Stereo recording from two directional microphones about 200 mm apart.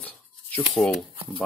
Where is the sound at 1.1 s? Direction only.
30° right (ahead or behind).